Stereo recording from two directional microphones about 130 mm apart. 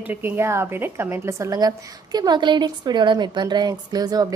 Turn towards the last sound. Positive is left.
turn(degrees=-30)  # may be behind; listen again after turning